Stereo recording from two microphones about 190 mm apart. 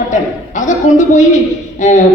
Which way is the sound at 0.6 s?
40° left (ahead or behind).